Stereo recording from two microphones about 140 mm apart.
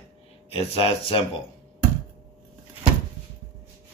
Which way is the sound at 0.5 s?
45° left (ahead or behind).